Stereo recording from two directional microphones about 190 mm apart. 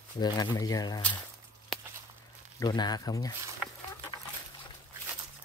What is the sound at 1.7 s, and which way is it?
Walk, 5° left (ahead or behind).